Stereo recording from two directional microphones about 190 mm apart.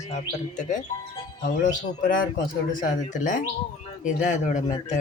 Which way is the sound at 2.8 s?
45° left (ahead or behind).